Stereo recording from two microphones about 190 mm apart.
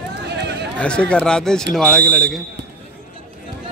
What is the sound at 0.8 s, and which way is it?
Speech, 5° left (ahead or behind).